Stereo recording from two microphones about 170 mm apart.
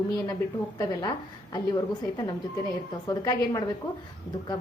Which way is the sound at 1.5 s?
20° left (ahead or behind).